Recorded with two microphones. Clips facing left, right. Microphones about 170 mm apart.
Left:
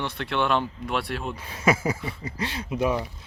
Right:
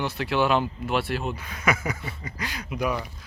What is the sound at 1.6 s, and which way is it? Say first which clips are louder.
Speech: left 4 dB; 30° left (ahead or behind).